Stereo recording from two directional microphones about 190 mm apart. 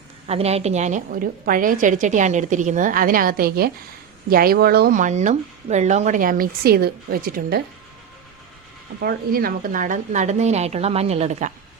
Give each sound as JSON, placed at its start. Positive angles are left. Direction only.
{"t": 0.3, "sound": "a woman's voice", "side_deg": -35}
{"t": 9.0, "sound": "a woman's voice", "side_deg": -55}